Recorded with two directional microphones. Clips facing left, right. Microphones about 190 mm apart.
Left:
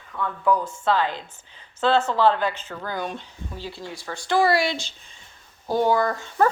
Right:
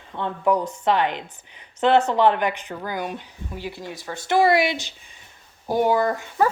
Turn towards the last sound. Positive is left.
turn(degrees=-15)  # may be behind; listen again after turning